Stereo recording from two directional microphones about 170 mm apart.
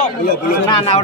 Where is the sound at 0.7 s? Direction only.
30° left (ahead or behind).